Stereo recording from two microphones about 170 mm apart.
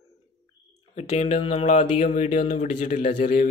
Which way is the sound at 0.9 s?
40° left (ahead or behind).